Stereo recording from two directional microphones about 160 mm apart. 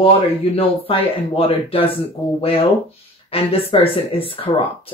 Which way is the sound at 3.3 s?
35° left (ahead or behind).